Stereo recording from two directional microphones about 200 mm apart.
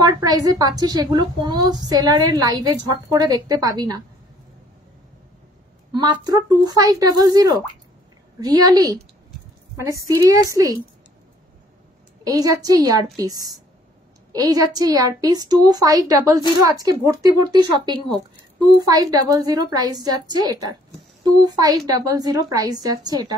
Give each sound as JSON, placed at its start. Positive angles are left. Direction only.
{"t": 0.0, "sound": "a woman's voice", "side_deg": -20}
{"t": 5.9, "sound": "a woman's voice", "side_deg": -20}
{"t": 12.3, "sound": "a woman's voice", "side_deg": -20}